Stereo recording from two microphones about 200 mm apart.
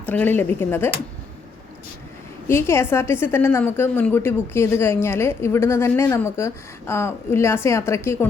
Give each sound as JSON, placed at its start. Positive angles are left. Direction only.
{"t": 0.0, "sound": "a woman's voice", "side_deg": 10}
{"t": 2.5, "sound": "a woman's voice", "side_deg": 15}